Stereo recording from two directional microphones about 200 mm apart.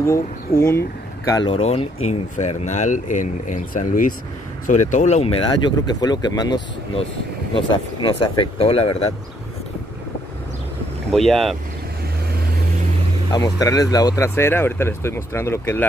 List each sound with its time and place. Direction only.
0.6 s speech: 10° left (ahead or behind); by 9.1 s 30° left (ahead or behind)
11.1 s speech: centre (ahead or behind)
13.3 s speech: 20° left (ahead or behind)